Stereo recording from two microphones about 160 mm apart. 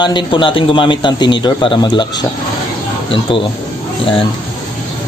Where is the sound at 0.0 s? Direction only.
30° left (ahead or behind).